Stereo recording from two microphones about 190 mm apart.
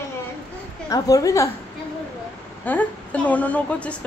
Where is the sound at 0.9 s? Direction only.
15° left (ahead or behind).